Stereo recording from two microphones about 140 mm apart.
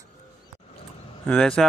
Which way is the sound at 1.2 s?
5° left (ahead or behind).